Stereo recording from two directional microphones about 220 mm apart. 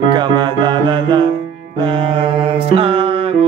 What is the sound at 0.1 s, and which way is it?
Music, 20° right (ahead or behind).